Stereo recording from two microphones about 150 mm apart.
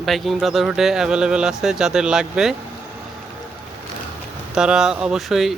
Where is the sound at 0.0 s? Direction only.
Centre (ahead or behind).